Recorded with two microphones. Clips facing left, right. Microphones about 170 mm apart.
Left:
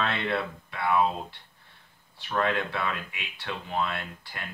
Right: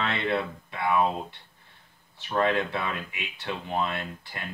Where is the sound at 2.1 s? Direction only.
20° right (ahead or behind).